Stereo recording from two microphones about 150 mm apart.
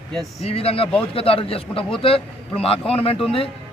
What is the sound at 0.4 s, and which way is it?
Speech, 40° left (ahead or behind).